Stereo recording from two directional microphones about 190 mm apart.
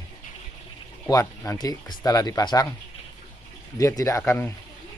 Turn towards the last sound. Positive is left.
turn(degrees=10)  # may be behind; listen again after turning